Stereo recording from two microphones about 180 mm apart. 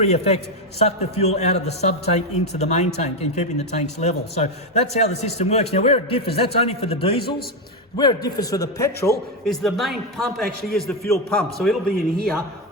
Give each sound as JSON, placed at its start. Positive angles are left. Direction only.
{"t": 0.0, "sound": "a man's voice", "side_deg": 35}
{"t": 7.9, "sound": "a man's voice", "side_deg": 20}
{"t": 9.4, "sound": "a man's voice", "side_deg": 0}